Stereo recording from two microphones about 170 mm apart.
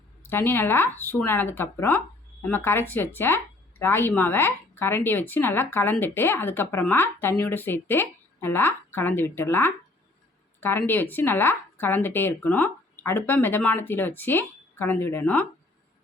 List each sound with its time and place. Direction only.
0.3 s speech: 10° left (ahead or behind)